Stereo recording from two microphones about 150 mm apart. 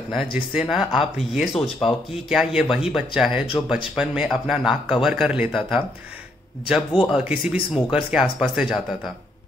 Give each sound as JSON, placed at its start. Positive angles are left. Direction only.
{"t": 0.1, "sound": "a man's voice", "side_deg": -10}
{"t": 1.5, "sound": "speech", "side_deg": 40}
{"t": 2.2, "sound": "a man's voice", "side_deg": -5}